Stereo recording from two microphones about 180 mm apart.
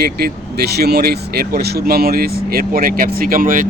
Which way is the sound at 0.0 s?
60° right (ahead or behind).